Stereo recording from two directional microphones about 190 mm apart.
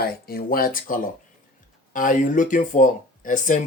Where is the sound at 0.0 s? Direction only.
50° left (ahead or behind).